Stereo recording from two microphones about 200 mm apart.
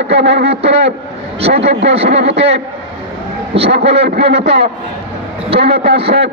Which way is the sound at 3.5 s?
30° right (ahead or behind).